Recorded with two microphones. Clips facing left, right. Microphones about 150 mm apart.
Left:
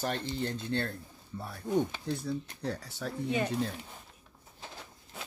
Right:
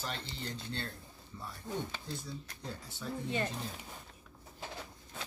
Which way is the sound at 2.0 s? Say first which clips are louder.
Left 9 dB; 65° left (ahead or behind).